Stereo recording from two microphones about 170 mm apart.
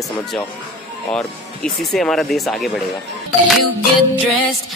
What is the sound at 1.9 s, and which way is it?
Speech, centre (ahead or behind).